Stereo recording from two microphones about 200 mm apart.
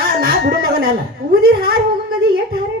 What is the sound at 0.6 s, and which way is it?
Speech, 45° right (ahead or behind).